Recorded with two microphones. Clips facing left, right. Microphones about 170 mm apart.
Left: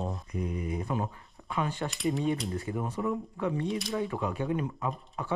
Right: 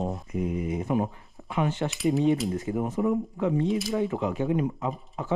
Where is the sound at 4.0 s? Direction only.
20° right (ahead or behind).